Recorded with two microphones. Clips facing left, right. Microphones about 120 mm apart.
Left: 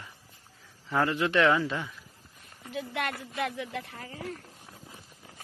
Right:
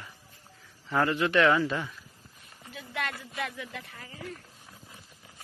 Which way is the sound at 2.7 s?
60° left (ahead or behind).